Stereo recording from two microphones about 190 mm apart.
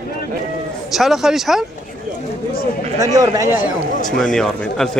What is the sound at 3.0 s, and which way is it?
Speech, 20° right (ahead or behind).